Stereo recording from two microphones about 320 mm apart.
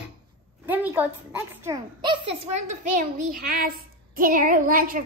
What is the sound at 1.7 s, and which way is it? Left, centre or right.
A child's voice, centre.